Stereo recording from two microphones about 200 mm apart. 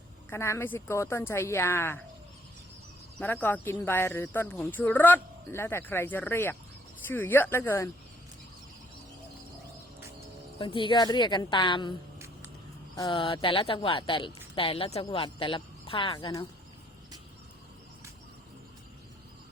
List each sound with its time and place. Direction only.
0.3 s speech: 10° left (ahead or behind)
3.2 s speech: 10° left (ahead or behind)
10.6 s a woman's voice: 25° left (ahead or behind)
13.0 s a woman's voice: 25° left (ahead or behind)